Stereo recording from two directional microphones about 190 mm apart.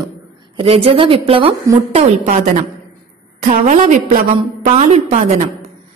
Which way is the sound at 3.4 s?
40° right (ahead or behind).